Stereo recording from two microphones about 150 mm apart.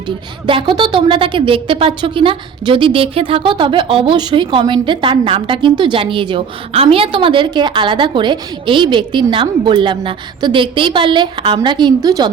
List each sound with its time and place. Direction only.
0.4 s a woman's voice: 35° right (ahead or behind)